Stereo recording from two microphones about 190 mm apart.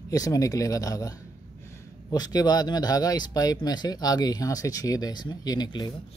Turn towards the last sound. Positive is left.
turn(degrees=20)  # may be behind; listen again after turning